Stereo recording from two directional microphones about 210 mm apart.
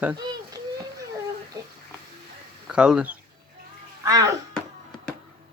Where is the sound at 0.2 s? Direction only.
20° right (ahead or behind).